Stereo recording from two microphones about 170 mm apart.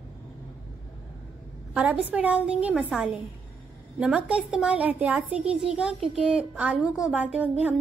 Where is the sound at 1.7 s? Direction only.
5° right (ahead or behind).